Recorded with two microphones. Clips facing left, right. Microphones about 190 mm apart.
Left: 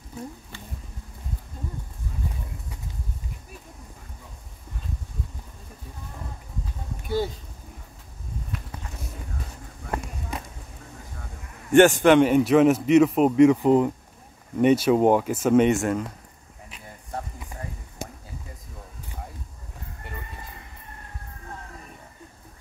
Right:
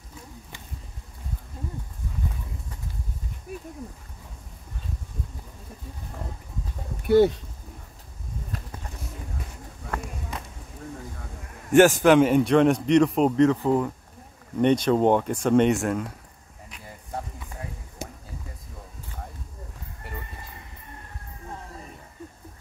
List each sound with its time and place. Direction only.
7.1 s speech: 65° right (ahead or behind)
11.7 s a man's voice: centre (ahead or behind); by 13.9 s 20° left (ahead or behind)
14.6 s a man's voice: 5° left (ahead or behind)